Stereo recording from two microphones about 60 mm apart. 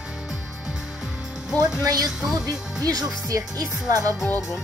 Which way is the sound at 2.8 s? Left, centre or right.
Right.